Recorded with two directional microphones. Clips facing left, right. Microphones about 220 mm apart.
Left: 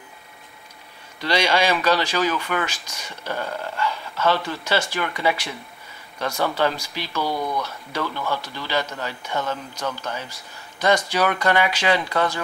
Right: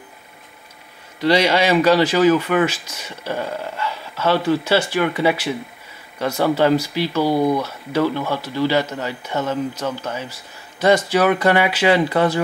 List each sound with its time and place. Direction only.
1.3 s speech: 10° right (ahead or behind)
7.2 s speech: 30° right (ahead or behind)
7.6 s speech: 5° right (ahead or behind)